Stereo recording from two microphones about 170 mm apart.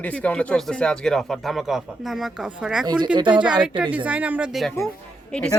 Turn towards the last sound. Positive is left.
turn(degrees=5)  # may be behind; listen again after turning